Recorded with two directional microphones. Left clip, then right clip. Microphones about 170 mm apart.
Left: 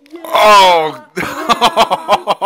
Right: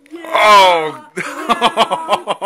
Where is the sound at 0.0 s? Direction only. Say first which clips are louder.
Left 2 dB; 10° left (ahead or behind).